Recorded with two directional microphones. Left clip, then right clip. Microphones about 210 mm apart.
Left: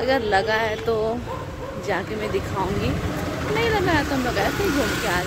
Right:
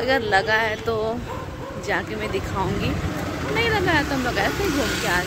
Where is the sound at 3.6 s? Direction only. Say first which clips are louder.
Right 1 dB; 5° left (ahead or behind).